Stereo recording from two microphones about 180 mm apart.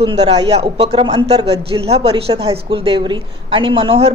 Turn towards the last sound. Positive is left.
turn(degrees=-30)  # may be behind; listen again after turning